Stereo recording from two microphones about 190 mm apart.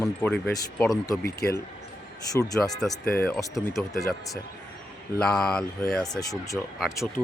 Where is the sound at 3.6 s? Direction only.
Centre (ahead or behind).